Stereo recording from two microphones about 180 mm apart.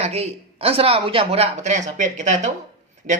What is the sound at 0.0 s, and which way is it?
Speech, 35° right (ahead or behind).